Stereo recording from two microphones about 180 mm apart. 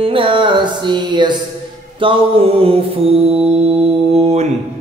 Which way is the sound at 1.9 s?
30° right (ahead or behind).